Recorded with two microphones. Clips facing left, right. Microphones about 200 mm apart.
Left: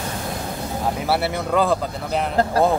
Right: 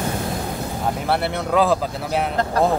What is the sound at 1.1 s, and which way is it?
Speech, 5° left (ahead or behind).